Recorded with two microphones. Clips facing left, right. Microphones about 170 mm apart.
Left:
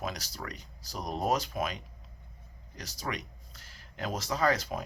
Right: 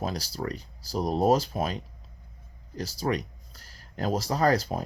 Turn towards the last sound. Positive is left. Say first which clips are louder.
# right 5 dB
turn(degrees=-35)  # may be behind; listen again after turning